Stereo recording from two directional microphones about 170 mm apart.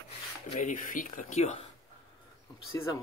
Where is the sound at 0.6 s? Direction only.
50° left (ahead or behind).